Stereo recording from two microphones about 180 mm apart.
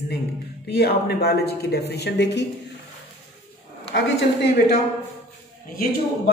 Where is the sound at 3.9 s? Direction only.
75° left (ahead or behind).